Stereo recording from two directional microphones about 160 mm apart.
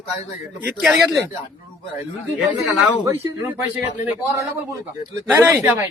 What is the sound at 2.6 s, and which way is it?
A man's voice, 20° right (ahead or behind).